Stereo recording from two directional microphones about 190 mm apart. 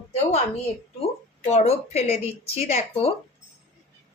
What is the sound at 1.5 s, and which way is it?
Speech, 35° left (ahead or behind).